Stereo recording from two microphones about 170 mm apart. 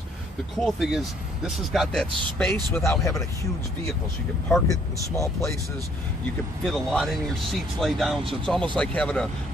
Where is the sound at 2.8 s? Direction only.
15° left (ahead or behind).